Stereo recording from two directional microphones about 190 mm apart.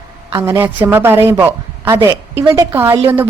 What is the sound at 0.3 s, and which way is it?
A woman's voice, 15° right (ahead or behind).